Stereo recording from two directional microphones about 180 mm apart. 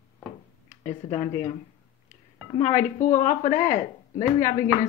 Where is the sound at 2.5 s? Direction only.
40° left (ahead or behind).